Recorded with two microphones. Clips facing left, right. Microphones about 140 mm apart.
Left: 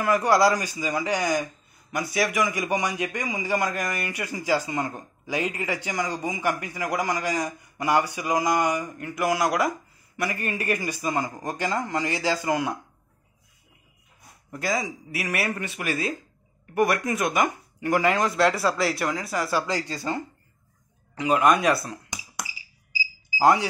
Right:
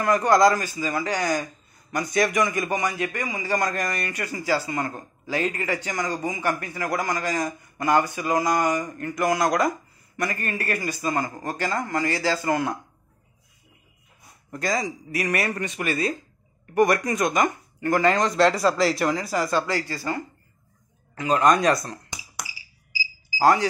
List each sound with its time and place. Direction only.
0.0 s speech: 10° left (ahead or behind)
14.5 s speech: 5° left (ahead or behind)
19.5 s speech: 20° left (ahead or behind)
21.1 s a sound: 15° left (ahead or behind)
23.3 s speech: 15° left (ahead or behind)